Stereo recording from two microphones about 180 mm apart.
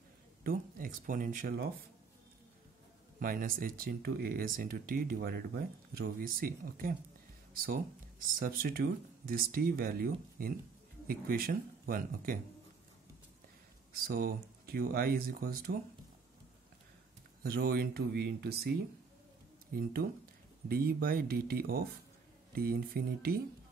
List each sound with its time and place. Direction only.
0.4 s speech: 50° right (ahead or behind)
3.2 s speech: 50° right (ahead or behind)
13.9 s speech: 55° right (ahead or behind)
17.4 s speech: 55° right (ahead or behind)